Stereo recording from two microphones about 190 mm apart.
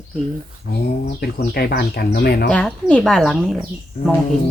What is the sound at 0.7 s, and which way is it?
Speech, 55° left (ahead or behind).